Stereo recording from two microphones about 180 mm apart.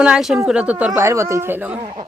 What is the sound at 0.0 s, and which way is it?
Speech, 5° right (ahead or behind).